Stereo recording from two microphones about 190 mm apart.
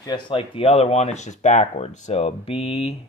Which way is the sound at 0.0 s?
25° left (ahead or behind).